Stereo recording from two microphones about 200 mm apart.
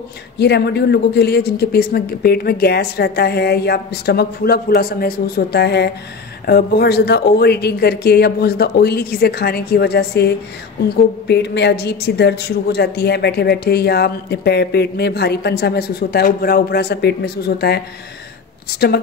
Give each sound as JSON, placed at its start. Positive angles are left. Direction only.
{"t": 0.4, "sound": "a woman's voice", "side_deg": 55}